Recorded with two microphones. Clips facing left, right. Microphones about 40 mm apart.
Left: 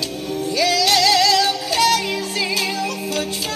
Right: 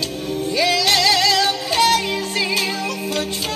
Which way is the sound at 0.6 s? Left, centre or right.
Right.